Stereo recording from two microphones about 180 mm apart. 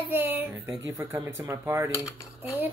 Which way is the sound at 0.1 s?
10° right (ahead or behind).